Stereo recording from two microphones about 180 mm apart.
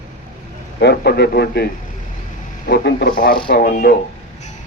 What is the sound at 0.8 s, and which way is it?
Speech, 65° left (ahead or behind).